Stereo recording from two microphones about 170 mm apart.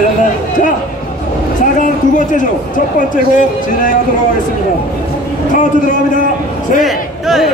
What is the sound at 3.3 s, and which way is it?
Speech, 50° left (ahead or behind).